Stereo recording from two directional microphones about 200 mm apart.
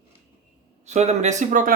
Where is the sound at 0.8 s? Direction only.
35° right (ahead or behind).